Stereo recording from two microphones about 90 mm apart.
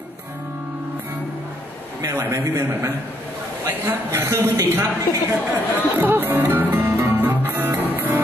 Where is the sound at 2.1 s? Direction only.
30° right (ahead or behind).